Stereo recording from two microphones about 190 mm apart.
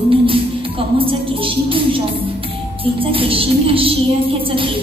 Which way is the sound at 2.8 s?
30° right (ahead or behind).